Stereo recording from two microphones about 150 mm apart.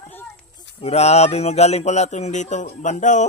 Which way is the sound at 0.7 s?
45° left (ahead or behind).